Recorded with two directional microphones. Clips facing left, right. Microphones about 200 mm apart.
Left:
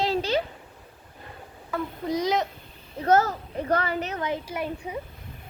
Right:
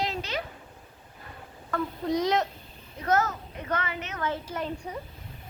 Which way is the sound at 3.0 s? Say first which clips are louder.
Left 5 dB; 30° left (ahead or behind).